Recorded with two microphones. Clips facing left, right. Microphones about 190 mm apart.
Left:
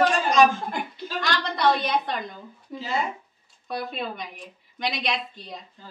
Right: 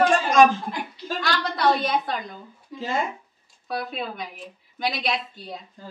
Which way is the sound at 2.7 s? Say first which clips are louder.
Right 1 dB; 50° left (ahead or behind).